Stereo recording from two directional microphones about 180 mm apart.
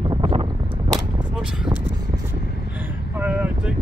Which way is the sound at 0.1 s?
30° right (ahead or behind).